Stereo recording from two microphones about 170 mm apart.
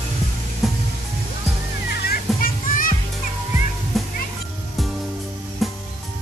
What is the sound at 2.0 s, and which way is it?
Music, 55° left (ahead or behind).